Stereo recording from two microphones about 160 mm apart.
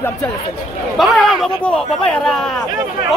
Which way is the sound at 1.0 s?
Centre (ahead or behind).